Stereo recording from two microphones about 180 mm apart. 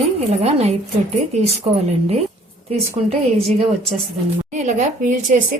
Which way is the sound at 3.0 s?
35° right (ahead or behind).